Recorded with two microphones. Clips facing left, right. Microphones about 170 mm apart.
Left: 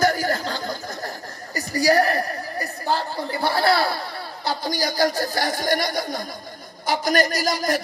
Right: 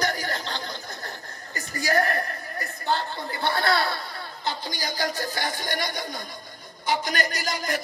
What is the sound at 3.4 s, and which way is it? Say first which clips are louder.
A man's voice: left 4 dB; 30° left (ahead or behind).